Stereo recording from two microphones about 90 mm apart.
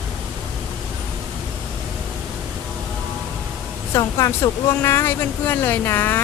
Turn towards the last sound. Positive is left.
turn(degrees=25)  # may be behind; listen again after turning